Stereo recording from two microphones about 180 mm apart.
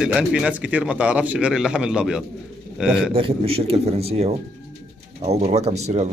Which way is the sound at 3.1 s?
30° right (ahead or behind).